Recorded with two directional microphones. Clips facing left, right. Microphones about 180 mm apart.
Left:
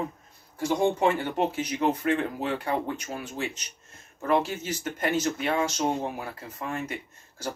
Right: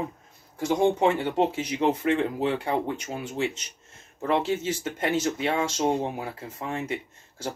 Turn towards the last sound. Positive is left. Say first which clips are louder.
# right 1 dB
turn(degrees=-25)  # may be behind; listen again after turning